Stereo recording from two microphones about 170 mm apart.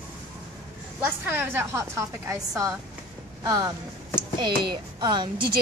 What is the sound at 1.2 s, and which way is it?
A woman's voice, 10° right (ahead or behind).